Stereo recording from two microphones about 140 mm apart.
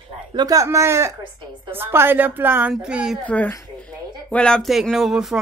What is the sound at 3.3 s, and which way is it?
Speech, 10° left (ahead or behind).